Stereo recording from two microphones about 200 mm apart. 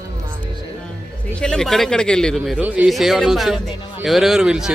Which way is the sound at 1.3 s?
5° left (ahead or behind).